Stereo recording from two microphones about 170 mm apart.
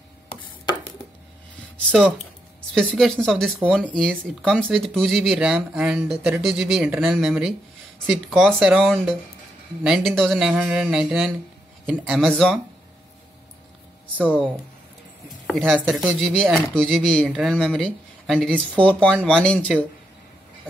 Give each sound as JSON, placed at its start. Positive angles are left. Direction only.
{"t": 0.3, "sound": "chopping", "side_deg": 30}
{"t": 1.9, "sound": "speech", "side_deg": -10}
{"t": 2.9, "sound": "speech", "side_deg": 5}
{"t": 15.4, "sound": "speech", "side_deg": 5}